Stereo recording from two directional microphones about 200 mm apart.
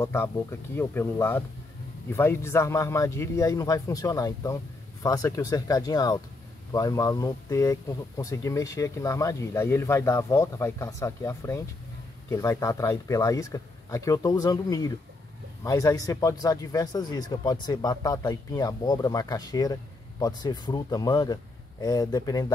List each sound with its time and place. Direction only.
0.0 s speech: 15° left (ahead or behind)